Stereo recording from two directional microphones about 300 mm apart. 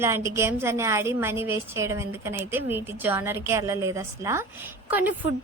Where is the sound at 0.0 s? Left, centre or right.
Centre.